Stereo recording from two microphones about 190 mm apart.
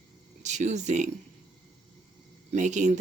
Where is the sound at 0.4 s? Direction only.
40° right (ahead or behind).